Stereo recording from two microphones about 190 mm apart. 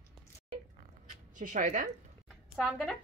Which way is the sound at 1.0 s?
40° right (ahead or behind).